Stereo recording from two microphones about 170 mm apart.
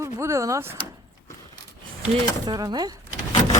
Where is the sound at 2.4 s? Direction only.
25° right (ahead or behind).